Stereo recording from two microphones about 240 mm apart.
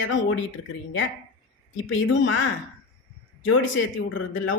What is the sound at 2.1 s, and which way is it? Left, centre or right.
Speech, left.